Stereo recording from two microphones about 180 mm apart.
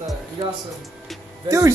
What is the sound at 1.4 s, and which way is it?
Speech, 15° right (ahead or behind).